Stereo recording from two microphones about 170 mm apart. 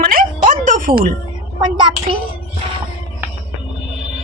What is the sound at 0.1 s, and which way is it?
Music, 55° right (ahead or behind).